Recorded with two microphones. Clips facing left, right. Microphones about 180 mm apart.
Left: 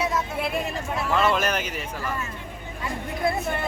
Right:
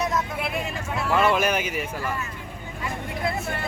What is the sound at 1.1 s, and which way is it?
Speech, 10° right (ahead or behind).